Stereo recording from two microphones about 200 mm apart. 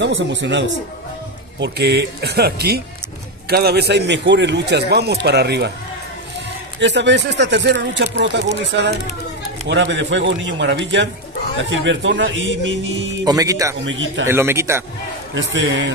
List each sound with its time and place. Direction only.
0.0 s a man's voice: 65° right (ahead or behind)
6.8 s a man's voice: 60° right (ahead or behind)
9.7 s a man's voice: 65° right (ahead or behind)
13.2 s speech: 20° right (ahead or behind)
13.8 s speech: 70° right (ahead or behind)
14.2 s speech: 10° right (ahead or behind)
15.3 s speech: 70° right (ahead or behind)